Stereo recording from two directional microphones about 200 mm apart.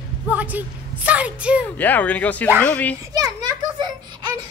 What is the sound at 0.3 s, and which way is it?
A woman's voice, 10° right (ahead or behind).